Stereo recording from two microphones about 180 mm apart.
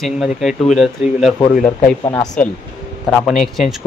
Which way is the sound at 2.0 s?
20° left (ahead or behind).